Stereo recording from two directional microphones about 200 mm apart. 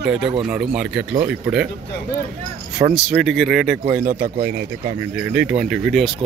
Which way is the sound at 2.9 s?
5° right (ahead or behind).